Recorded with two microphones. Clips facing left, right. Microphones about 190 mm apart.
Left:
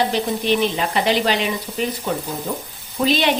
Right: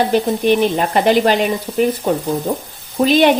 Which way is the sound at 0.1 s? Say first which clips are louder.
Right 6 dB; 50° right (ahead or behind).